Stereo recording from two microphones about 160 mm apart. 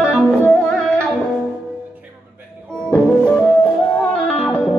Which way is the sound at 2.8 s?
5° left (ahead or behind).